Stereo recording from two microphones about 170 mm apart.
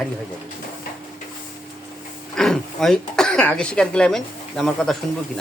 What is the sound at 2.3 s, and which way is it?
Speech, 5° left (ahead or behind).